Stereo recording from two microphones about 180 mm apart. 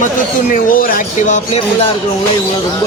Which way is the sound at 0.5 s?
50° left (ahead or behind).